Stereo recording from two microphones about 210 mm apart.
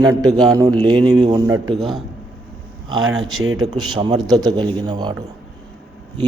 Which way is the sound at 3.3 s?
80° right.